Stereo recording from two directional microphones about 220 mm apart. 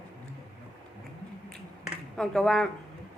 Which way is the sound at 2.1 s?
Centre (ahead or behind).